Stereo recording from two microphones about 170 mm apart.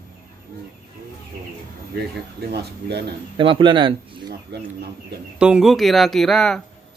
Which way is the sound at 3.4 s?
30° right (ahead or behind).